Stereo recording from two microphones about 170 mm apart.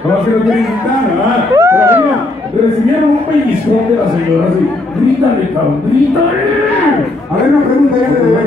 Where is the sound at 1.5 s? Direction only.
15° right (ahead or behind).